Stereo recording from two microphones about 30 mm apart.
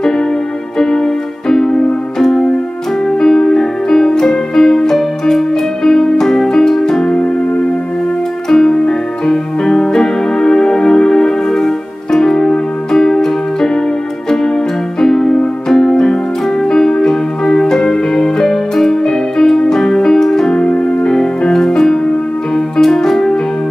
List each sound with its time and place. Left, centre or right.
0.7 s keyboard: centre
5.9 s music: centre
8.5 s music: centre
15.0 s keyboard: centre
16.6 s music: centre
20.5 s music: left
21.1 s music: centre